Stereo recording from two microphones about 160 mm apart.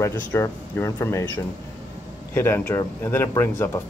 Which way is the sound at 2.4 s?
15° left (ahead or behind).